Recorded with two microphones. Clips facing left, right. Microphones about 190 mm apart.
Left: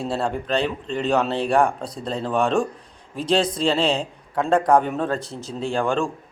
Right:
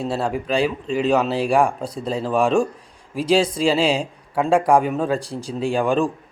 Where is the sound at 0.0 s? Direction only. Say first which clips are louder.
Right 2 dB; 5° right (ahead or behind).